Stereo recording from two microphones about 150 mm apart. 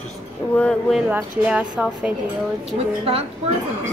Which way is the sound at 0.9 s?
10° right (ahead or behind).